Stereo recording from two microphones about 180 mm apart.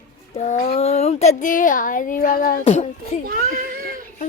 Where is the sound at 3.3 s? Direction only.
55° right (ahead or behind).